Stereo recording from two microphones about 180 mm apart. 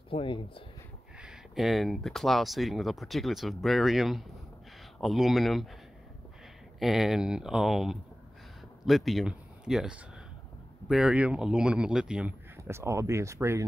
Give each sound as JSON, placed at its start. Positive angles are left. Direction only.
{"t": 0.1, "sound": "speech", "side_deg": 30}
{"t": 1.2, "sound": "speech", "side_deg": 0}
{"t": 6.8, "sound": "speech", "side_deg": 0}